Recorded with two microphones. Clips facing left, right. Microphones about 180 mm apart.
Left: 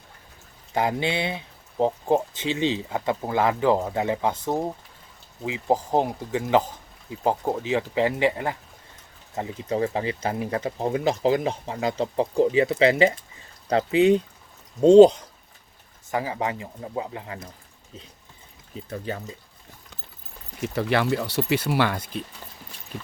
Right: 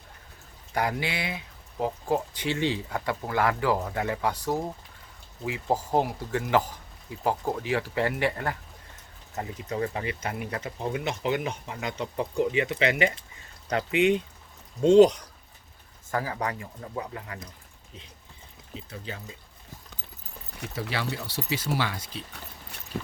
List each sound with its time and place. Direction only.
0.7 s speech: 25° left (ahead or behind)
9.3 s speech: 30° left (ahead or behind)
18.8 s speech: 45° left (ahead or behind)
20.6 s speech: 65° left (ahead or behind)